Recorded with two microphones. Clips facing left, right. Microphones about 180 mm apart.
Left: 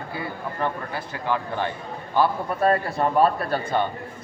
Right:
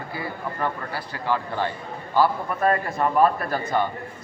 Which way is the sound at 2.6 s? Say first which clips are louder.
Left 1 dB; 30° left (ahead or behind).